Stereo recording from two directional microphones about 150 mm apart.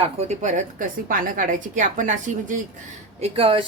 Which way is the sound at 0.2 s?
50° right (ahead or behind).